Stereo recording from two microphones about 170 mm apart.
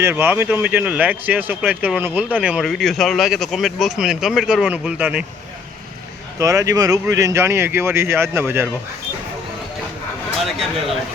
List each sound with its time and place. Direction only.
0.0 s speech: 15° right (ahead or behind)
6.4 s speech: 20° right (ahead or behind)
10.4 s speech: centre (ahead or behind)